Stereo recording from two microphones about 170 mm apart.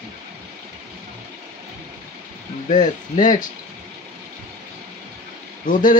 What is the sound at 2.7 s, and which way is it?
Speech, 50° left (ahead or behind).